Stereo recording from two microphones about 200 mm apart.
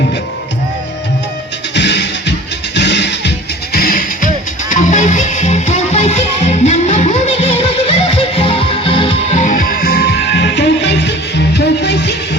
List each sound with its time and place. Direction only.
1.7 s music: 60° left (ahead or behind)